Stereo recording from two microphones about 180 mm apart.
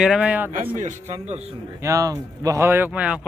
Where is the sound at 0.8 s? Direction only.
40° right (ahead or behind).